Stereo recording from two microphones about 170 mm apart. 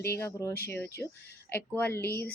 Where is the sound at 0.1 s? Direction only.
15° left (ahead or behind).